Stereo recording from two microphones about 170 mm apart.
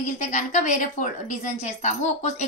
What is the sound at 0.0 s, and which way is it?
A woman's voice, 45° left (ahead or behind).